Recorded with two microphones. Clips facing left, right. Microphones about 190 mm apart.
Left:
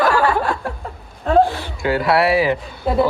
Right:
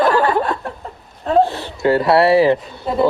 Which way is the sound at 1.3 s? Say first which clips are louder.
Even; 30° right (ahead or behind).